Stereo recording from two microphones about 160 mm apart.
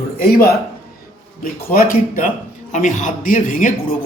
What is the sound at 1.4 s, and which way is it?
Speech, 65° left (ahead or behind).